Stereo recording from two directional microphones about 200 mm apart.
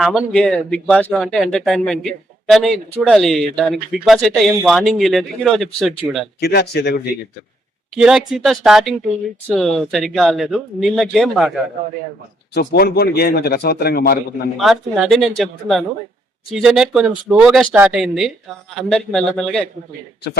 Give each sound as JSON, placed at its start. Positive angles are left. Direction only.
{"t": 0.0, "sound": "speech", "side_deg": 0}
{"t": 6.4, "sound": "speech", "side_deg": 50}
{"t": 7.9, "sound": "speech", "side_deg": -5}
{"t": 12.5, "sound": "speech", "side_deg": 50}
{"t": 14.6, "sound": "speech", "side_deg": 0}